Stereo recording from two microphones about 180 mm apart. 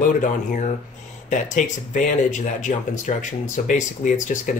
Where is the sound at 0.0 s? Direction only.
45° left (ahead or behind).